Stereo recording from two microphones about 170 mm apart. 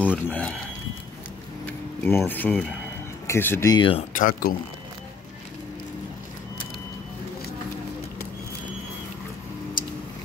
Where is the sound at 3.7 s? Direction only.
30° left (ahead or behind).